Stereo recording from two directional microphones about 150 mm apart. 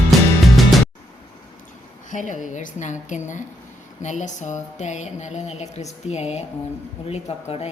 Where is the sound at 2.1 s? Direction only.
60° left (ahead or behind).